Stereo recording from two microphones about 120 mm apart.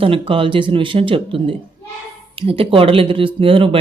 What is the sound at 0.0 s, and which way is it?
Speech, 50° right (ahead or behind).